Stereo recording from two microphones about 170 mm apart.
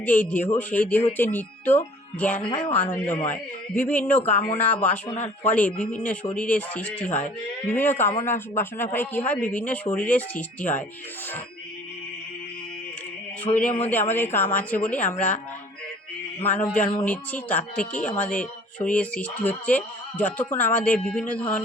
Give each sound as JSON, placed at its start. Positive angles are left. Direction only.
{"t": 0.0, "sound": "speech", "side_deg": 10}
{"t": 13.6, "sound": "speech", "side_deg": 5}
{"t": 16.4, "sound": "speech", "side_deg": 10}